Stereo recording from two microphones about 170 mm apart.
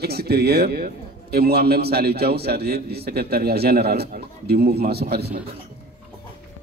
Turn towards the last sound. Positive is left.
turn(degrees=-70)  # may be behind; listen again after turning